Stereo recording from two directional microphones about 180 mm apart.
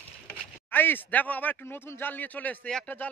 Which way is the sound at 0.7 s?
10° left (ahead or behind).